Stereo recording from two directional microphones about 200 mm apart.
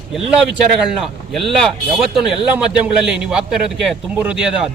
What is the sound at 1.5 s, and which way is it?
Speech, centre (ahead or behind).